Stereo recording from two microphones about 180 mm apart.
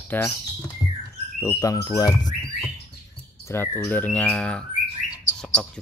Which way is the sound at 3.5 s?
10° left (ahead or behind).